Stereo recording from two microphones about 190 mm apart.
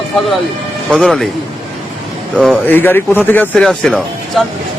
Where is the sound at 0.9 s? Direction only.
Centre (ahead or behind).